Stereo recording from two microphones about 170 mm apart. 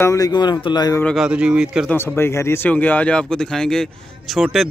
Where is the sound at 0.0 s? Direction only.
20° left (ahead or behind).